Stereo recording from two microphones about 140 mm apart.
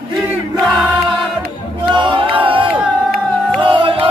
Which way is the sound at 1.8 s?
35° right (ahead or behind).